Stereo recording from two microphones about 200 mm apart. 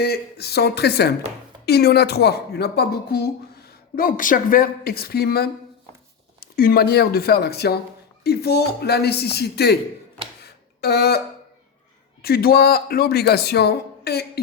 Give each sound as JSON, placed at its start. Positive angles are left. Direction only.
{"t": 0.0, "sound": "speech", "side_deg": 55}
{"t": 10.4, "sound": "a sound", "side_deg": 55}
{"t": 12.2, "sound": "speech", "side_deg": 50}